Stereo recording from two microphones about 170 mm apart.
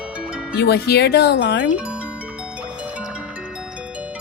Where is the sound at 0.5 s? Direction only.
75° left (ahead or behind).